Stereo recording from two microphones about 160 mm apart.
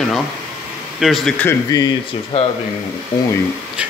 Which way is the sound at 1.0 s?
Centre (ahead or behind).